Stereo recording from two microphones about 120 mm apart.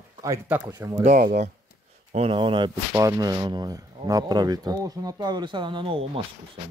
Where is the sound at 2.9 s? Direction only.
30° right (ahead or behind); by 6.1 s 50° right (ahead or behind).